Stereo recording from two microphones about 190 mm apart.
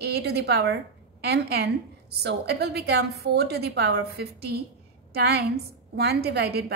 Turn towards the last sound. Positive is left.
turn(degrees=-55)  # may be behind; listen again after turning